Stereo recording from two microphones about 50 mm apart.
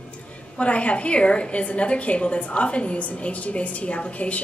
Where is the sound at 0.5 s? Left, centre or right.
Left.